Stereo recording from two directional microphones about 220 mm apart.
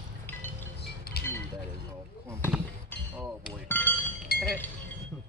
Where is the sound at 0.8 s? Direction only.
45° left (ahead or behind).